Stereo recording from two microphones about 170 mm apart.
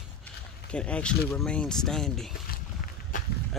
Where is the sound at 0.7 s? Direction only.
5° left (ahead or behind).